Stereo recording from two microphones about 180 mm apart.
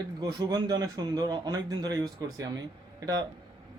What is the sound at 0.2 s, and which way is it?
A man's voice, 25° right (ahead or behind).